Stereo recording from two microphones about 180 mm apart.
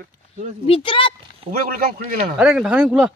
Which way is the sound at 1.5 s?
55° right (ahead or behind).